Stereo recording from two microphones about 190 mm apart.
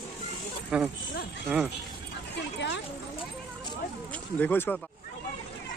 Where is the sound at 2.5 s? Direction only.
65° left (ahead or behind).